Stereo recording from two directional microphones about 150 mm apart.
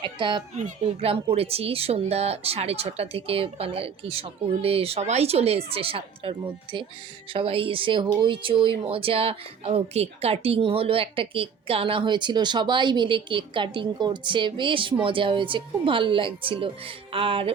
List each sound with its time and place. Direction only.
0.0 s a child's voice: 35° right (ahead or behind)
0.5 s speech: 50° right (ahead or behind)